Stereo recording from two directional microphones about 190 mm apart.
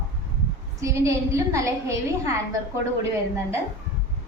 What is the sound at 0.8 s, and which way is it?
A woman's voice, 15° right (ahead or behind).